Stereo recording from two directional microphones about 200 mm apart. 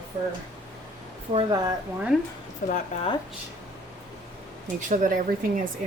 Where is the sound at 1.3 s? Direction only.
20° right (ahead or behind).